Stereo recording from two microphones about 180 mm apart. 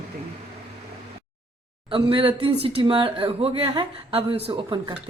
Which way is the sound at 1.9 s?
30° right (ahead or behind).